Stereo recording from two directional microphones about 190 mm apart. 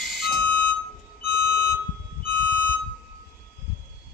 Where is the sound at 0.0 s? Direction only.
Centre (ahead or behind).